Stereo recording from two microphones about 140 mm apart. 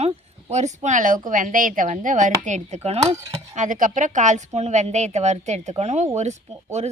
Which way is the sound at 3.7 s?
70° right (ahead or behind).